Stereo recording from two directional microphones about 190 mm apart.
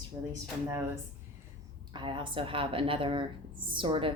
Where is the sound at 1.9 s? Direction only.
25° right (ahead or behind).